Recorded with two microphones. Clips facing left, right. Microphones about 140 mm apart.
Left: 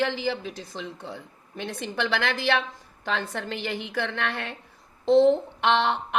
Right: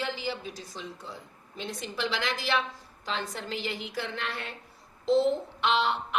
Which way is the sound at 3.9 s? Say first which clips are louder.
Left 5 dB; 70° left (ahead or behind).